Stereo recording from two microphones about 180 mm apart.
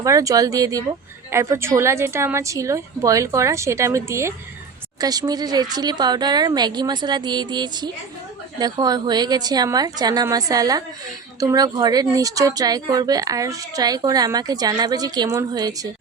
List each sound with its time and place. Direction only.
0.0 s a woman's voice: 20° right (ahead or behind)